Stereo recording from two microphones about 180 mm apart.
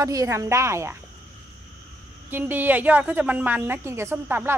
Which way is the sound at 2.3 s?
10° right (ahead or behind).